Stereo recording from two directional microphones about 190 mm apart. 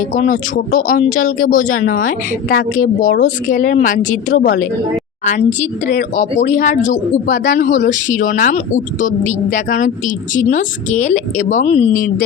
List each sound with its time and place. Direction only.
0.1 s speech: 45° left (ahead or behind)